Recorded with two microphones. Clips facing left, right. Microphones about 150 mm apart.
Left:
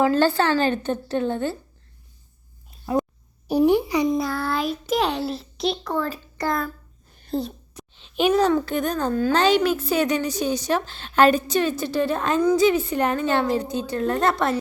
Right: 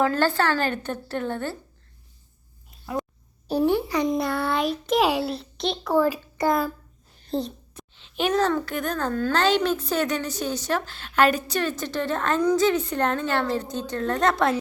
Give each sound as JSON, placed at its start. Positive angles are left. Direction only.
{"t": 0.0, "sound": "a child's voice", "side_deg": 15}
{"t": 2.8, "sound": "a sound", "side_deg": 30}
{"t": 3.5, "sound": "a child's voice", "side_deg": 15}
{"t": 4.1, "sound": "a child's voice", "side_deg": 0}
{"t": 7.8, "sound": "a child's voice", "side_deg": 15}